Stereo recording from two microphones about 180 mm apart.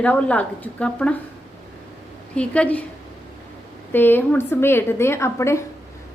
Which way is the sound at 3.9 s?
10° left (ahead or behind).